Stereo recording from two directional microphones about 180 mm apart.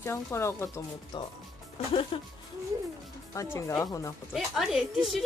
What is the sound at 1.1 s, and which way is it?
Speech, 25° left (ahead or behind).